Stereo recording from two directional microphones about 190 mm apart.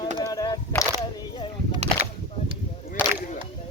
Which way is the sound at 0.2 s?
20° left (ahead or behind).